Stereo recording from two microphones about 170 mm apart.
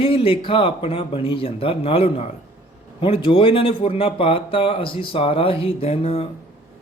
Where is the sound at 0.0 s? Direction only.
35° left (ahead or behind).